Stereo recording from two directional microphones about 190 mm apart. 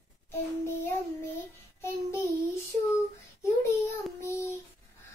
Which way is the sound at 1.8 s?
15° left (ahead or behind).